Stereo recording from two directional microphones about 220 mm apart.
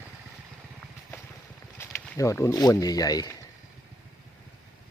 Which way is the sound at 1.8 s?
10° left (ahead or behind).